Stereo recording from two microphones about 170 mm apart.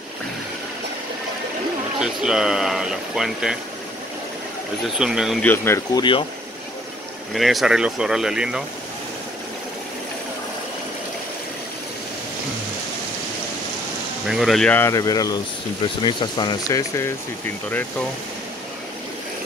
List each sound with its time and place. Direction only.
2.0 s speech: 5° right (ahead or behind)
4.9 s speech: 5° right (ahead or behind)
5.4 s speech: 10° left (ahead or behind)
5.9 s speech: 30° left (ahead or behind)
7.3 s speech: centre (ahead or behind)
14.2 s speech: centre (ahead or behind); by 17.1 s 20° left (ahead or behind)